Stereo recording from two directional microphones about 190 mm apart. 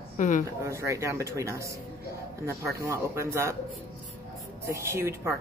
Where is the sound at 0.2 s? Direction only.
40° left (ahead or behind).